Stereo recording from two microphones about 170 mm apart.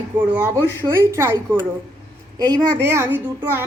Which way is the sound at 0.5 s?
10° left (ahead or behind).